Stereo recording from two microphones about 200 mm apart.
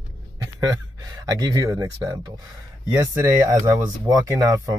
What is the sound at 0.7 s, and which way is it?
Speech, 20° right (ahead or behind).